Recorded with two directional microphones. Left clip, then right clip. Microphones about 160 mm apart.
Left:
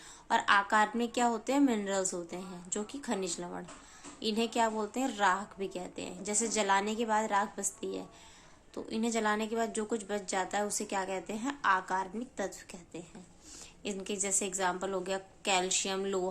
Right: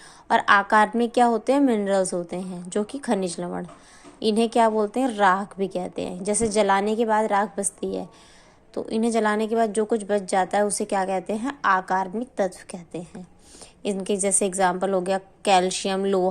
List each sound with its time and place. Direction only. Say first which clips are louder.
0.3 s speech: right 9 dB; 40° right (ahead or behind)